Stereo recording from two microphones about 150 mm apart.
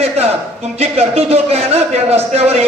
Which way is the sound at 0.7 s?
45° right (ahead or behind).